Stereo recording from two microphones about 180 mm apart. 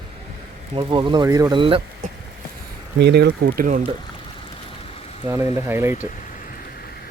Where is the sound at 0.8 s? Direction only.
25° right (ahead or behind).